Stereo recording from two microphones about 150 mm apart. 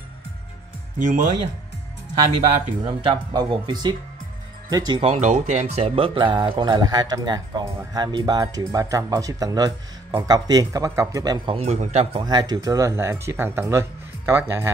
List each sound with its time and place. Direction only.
0.9 s speech: 60° right (ahead or behind)
2.9 s speech: 35° right (ahead or behind)
5.0 s speech: 50° right (ahead or behind); by 11.5 s 25° right (ahead or behind)
11.5 s speech: 45° right (ahead or behind); by 14.7 s 15° right (ahead or behind)